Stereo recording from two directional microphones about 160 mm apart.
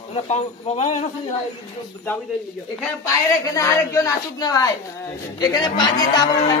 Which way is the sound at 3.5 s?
20° left (ahead or behind).